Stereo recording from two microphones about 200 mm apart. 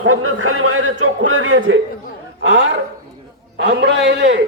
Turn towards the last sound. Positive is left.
turn(degrees=-60)  # may be behind; listen again after turning